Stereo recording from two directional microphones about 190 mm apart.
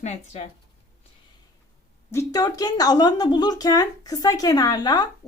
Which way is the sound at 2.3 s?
20° left (ahead or behind).